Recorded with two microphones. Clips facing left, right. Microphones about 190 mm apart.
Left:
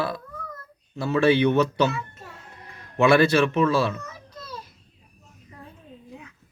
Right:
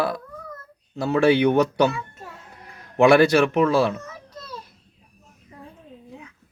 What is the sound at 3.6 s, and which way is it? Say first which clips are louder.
Speech: right 3 dB; 55° right (ahead or behind).